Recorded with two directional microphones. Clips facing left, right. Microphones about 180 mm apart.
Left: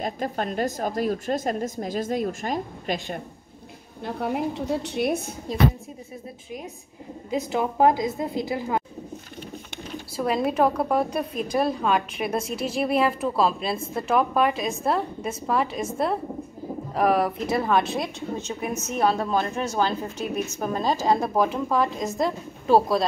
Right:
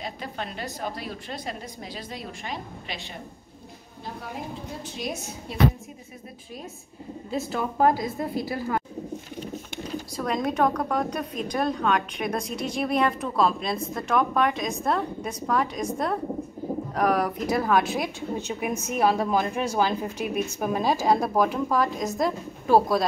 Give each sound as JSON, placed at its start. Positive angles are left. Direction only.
{"t": 0.0, "sound": "a woman's voice", "side_deg": 45}
{"t": 4.0, "sound": "a woman's voice", "side_deg": 65}
{"t": 7.2, "sound": "a woman's voice", "side_deg": 15}
{"t": 10.1, "sound": "a woman's voice", "side_deg": 5}
{"t": 16.9, "sound": "a woman's voice", "side_deg": 0}
{"t": 18.3, "sound": "a woman's voice", "side_deg": -10}